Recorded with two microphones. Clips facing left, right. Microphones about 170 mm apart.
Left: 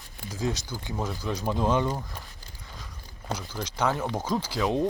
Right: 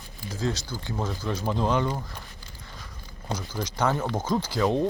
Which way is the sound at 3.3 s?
5° left (ahead or behind).